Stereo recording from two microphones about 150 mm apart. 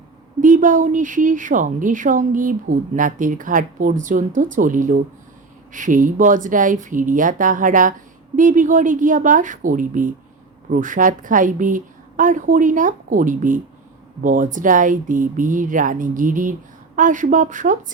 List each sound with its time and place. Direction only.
0.4 s a woman's voice: 60° right (ahead or behind)